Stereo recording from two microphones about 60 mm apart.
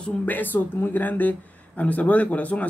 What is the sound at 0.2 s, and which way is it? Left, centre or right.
A man's voice, left.